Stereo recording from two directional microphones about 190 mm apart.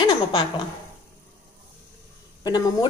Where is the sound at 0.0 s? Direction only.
25° left (ahead or behind).